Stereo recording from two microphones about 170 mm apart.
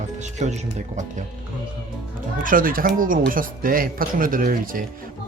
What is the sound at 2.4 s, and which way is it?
Speech, 55° right (ahead or behind).